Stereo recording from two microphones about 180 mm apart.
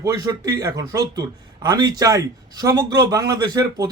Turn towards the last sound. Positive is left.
turn(degrees=-20)  # may be behind; listen again after turning